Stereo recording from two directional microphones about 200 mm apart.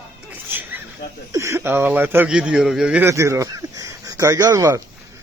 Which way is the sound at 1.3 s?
15° right (ahead or behind).